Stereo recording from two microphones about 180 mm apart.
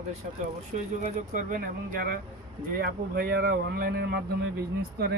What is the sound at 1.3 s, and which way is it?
Speech, 45° right (ahead or behind).